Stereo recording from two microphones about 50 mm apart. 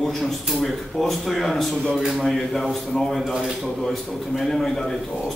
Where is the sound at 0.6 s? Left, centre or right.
Centre.